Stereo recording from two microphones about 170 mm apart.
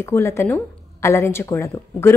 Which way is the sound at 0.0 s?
15° left (ahead or behind).